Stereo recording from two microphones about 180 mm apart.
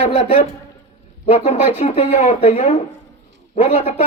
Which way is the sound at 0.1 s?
35° left (ahead or behind).